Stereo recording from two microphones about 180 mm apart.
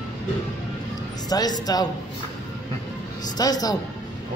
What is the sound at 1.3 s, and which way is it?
Speech, 20° left (ahead or behind).